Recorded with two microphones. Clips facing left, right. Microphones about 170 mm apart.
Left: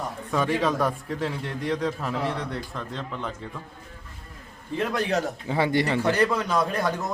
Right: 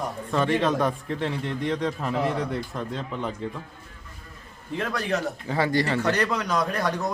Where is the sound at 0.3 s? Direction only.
5° left (ahead or behind).